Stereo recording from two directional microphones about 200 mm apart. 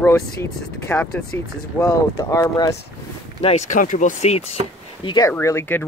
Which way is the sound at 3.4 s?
35° left (ahead or behind).